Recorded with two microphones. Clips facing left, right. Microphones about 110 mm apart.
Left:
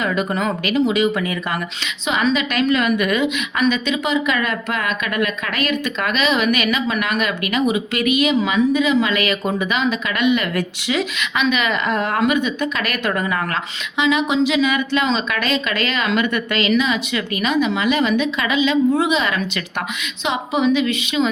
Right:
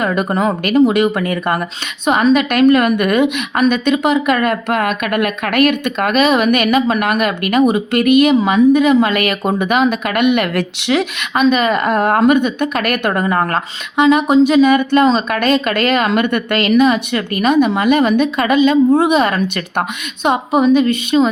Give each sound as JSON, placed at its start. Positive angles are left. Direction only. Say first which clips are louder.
{"t": 0.0, "sound": "a woman's voice", "louder": "right 5 dB", "side_deg": -45}
{"t": 11.3, "sound": "a woman's voice", "louder": "right 7 dB", "side_deg": -40}